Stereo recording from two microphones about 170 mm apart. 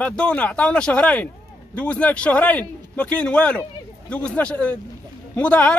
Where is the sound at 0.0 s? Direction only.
5° left (ahead or behind).